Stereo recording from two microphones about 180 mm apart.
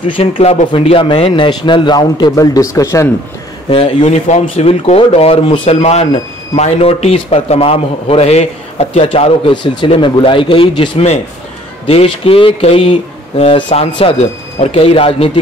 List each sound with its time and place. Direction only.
0.2 s speech: 35° left (ahead or behind); by 3.1 s 20° left (ahead or behind)
3.7 s a man's voice: 35° left (ahead or behind)